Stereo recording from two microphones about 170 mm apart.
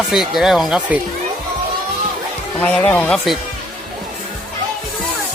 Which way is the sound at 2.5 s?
10° left (ahead or behind).